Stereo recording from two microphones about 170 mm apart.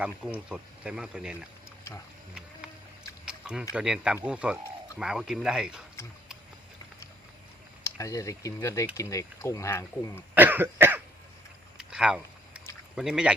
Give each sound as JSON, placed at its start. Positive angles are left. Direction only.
{"t": 0.0, "sound": "speech", "side_deg": -5}
{"t": 3.2, "sound": "a sound", "side_deg": -5}
{"t": 3.8, "sound": "speech", "side_deg": -5}
{"t": 7.9, "sound": "speech", "side_deg": 20}
{"t": 10.3, "sound": "cough", "side_deg": -10}
{"t": 11.8, "sound": "a sound", "side_deg": -5}
{"t": 13.0, "sound": "speech", "side_deg": -5}